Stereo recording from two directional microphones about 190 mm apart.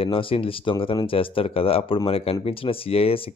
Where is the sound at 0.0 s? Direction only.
30° left (ahead or behind).